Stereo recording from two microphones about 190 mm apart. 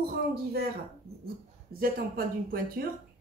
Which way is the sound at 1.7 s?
50° right (ahead or behind).